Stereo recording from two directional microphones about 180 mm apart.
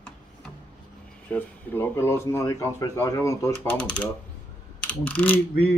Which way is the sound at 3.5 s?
10° left (ahead or behind).